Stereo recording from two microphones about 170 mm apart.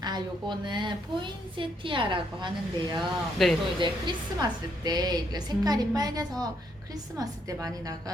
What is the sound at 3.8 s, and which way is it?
A woman's voice, 25° right (ahead or behind).